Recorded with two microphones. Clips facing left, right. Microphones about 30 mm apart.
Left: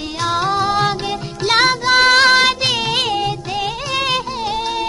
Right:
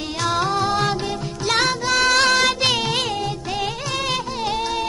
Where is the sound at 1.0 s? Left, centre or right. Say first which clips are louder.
Left 4 dB; left.